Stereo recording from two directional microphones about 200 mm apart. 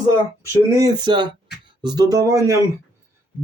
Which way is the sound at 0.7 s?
20° right (ahead or behind).